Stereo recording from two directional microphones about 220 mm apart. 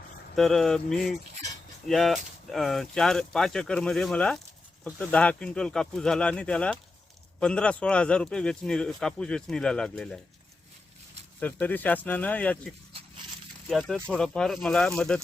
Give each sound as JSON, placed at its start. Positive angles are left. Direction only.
{"t": 0.3, "sound": "speech", "side_deg": 0}
{"t": 11.3, "sound": "speech", "side_deg": 10}
{"t": 13.7, "sound": "speech", "side_deg": 0}